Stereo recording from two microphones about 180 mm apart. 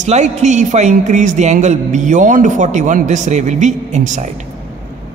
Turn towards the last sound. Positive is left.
turn(degrees=-40)  # may be behind; listen again after turning